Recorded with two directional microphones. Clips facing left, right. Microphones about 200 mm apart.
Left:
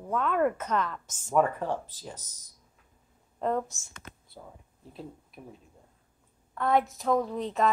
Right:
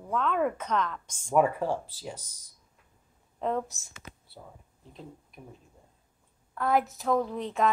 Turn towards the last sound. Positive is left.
turn(degrees=0)  # may be behind; listen again after turning